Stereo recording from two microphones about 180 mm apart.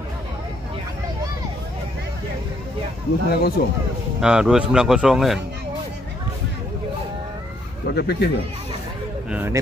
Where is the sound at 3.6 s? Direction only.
55° left (ahead or behind).